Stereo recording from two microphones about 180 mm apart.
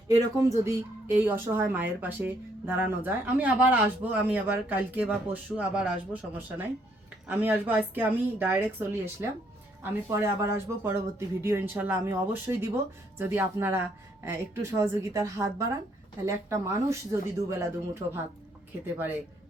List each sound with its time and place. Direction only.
0.3 s speech: 15° right (ahead or behind)